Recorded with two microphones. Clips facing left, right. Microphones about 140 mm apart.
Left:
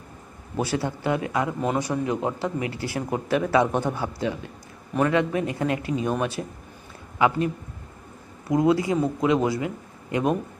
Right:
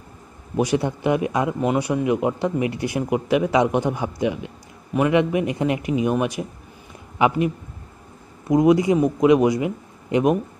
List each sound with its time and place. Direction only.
0.6 s speech: 15° right (ahead or behind)